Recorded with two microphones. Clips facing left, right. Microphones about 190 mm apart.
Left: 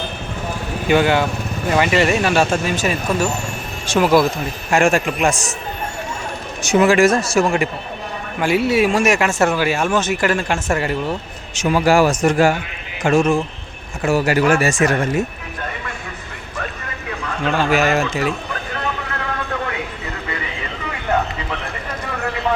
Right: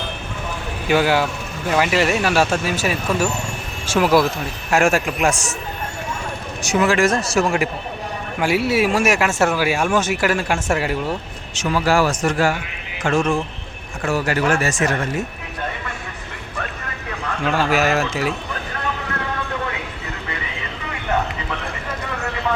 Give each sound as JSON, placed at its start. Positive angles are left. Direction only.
{"t": 0.9, "sound": "speech", "side_deg": -5}
{"t": 6.6, "sound": "speech", "side_deg": 25}
{"t": 11.5, "sound": "a man's voice", "side_deg": 15}
{"t": 17.4, "sound": "speech", "side_deg": -5}